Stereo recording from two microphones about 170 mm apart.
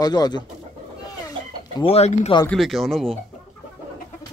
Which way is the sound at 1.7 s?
35° left (ahead or behind).